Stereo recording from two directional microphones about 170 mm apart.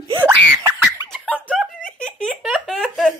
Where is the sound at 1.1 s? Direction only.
10° left (ahead or behind).